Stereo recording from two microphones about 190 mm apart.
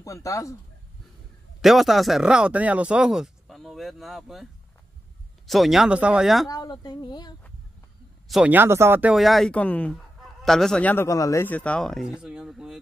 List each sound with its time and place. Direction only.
0.0 s speech: 15° left (ahead or behind)
1.6 s speech: centre (ahead or behind)
5.5 s speech: centre (ahead or behind)
6.5 s speech: 20° left (ahead or behind)
8.3 s speech: 5° right (ahead or behind)